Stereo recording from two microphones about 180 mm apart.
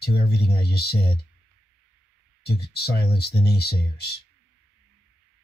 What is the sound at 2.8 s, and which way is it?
Speech, 65° left (ahead or behind).